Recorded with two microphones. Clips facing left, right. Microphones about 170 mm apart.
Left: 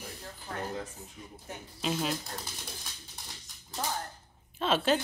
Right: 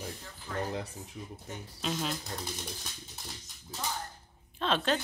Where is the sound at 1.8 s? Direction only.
5° left (ahead or behind).